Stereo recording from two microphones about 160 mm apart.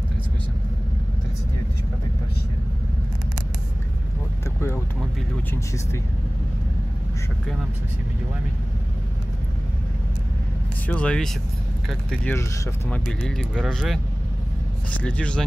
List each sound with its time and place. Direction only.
4.6 s vehicle: 15° left (ahead or behind)
10.9 s speech: 5° left (ahead or behind)
15.0 s speech: 5° left (ahead or behind)